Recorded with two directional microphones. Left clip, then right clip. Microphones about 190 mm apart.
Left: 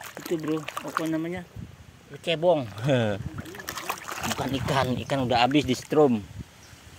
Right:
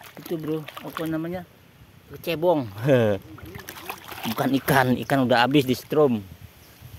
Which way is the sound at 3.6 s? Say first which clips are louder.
Left 4 dB; 40° left (ahead or behind).